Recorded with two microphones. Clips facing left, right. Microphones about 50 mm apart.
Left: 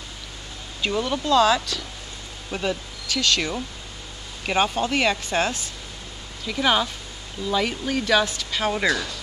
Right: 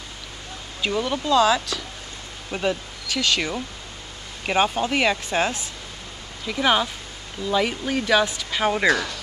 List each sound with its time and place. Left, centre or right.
0.8 s speech: centre
8.8 s speech: right